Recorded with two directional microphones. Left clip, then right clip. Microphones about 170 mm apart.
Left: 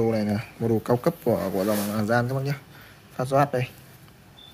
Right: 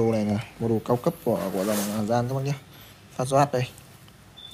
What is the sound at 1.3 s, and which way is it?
Speech, 45° left (ahead or behind).